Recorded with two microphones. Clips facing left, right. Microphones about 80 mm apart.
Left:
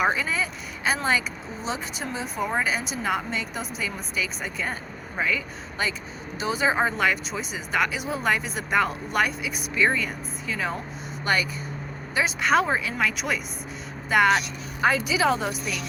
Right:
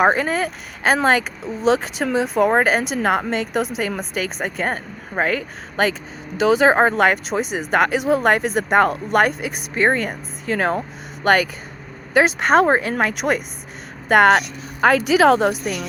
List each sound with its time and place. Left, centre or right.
0.0 s speech: right
3.6 s speech: right
6.4 s speech: right
12.1 s speech: right